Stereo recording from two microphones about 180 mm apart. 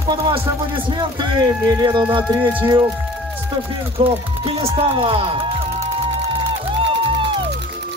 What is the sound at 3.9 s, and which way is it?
Music, 30° right (ahead or behind).